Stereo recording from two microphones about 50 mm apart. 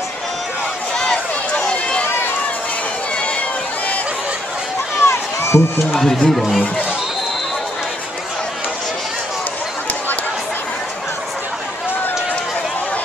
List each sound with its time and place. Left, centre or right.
1.6 s run: centre
5.0 s run: left
5.9 s speech: centre